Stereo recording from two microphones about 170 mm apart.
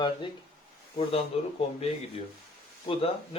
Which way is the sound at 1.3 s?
35° left (ahead or behind).